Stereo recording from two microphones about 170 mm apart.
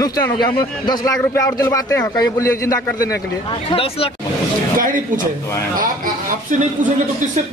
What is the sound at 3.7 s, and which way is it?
Speech, 30° left (ahead or behind).